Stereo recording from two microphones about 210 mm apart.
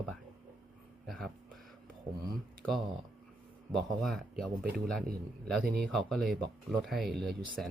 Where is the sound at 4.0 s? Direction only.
Centre (ahead or behind).